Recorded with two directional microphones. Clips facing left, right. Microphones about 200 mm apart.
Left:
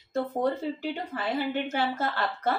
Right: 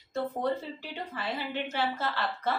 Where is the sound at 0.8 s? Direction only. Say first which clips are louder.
Left 6 dB; 45° left (ahead or behind).